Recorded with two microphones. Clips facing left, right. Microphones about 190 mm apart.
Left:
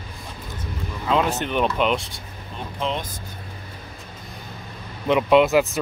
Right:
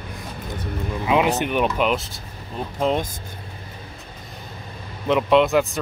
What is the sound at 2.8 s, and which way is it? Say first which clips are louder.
Speech: right 5 dB; 45° right (ahead or behind).